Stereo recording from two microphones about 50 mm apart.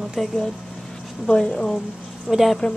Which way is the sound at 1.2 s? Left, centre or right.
Centre.